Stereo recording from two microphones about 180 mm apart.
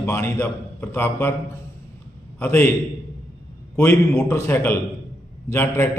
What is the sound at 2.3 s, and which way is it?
Speech, 10° left (ahead or behind).